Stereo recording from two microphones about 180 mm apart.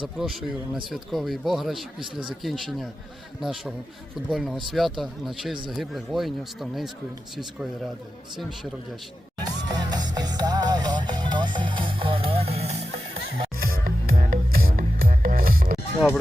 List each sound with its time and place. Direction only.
0.2 s speech: centre (ahead or behind)
9.6 s music: 25° right (ahead or behind)
13.6 s music: 55° right (ahead or behind)